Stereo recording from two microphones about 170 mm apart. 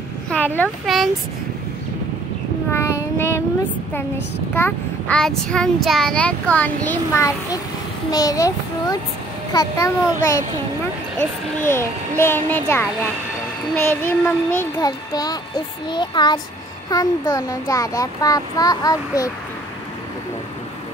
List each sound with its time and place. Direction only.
0.3 s a sound: 10° left (ahead or behind)
0.8 s speech: centre (ahead or behind)
2.7 s child singing: 15° left (ahead or behind)
4.6 s a child's voice: 10° left (ahead or behind)
11.7 s a child's voice: 15° left (ahead or behind)